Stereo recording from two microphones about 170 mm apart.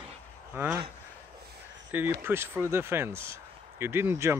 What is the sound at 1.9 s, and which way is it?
Speech, 15° right (ahead or behind).